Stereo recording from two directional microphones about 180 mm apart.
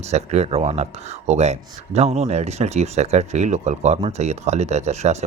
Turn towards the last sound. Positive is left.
turn(degrees=-40)  # may be behind; listen again after turning